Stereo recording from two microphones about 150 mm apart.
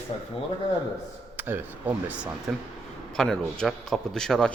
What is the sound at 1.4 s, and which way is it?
A man's voice, 15° right (ahead or behind).